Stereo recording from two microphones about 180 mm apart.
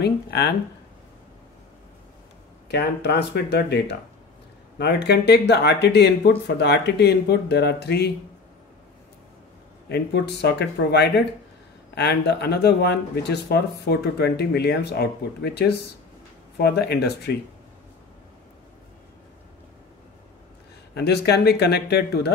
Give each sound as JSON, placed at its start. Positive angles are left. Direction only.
{"t": 0.0, "sound": "speech", "side_deg": 65}
{"t": 2.7, "sound": "speech", "side_deg": 65}
{"t": 9.8, "sound": "speech", "side_deg": 65}
{"t": 20.9, "sound": "speech", "side_deg": 65}